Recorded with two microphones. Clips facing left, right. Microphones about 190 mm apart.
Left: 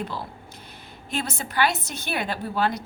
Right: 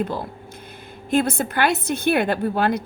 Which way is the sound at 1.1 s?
55° right (ahead or behind).